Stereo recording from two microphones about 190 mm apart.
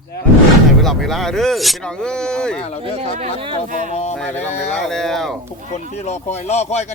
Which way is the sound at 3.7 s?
40° right (ahead or behind).